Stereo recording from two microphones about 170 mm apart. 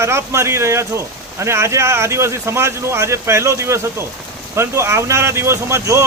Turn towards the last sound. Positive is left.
turn(degrees=-20)  # may be behind; listen again after turning